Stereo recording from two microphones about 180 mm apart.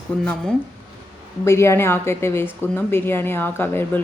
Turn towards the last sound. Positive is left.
turn(degrees=10)  # may be behind; listen again after turning